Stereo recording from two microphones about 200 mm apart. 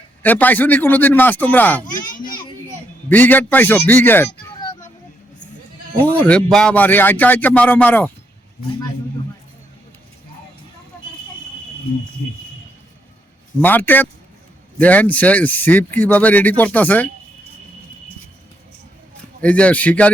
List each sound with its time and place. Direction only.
0.2 s speech: 10° left (ahead or behind)
1.8 s speech: 40° left (ahead or behind)
3.1 s speech: 10° left (ahead or behind)
6.0 s speech: 10° left (ahead or behind)
13.6 s speech: 10° left (ahead or behind)
19.4 s speech: 5° left (ahead or behind)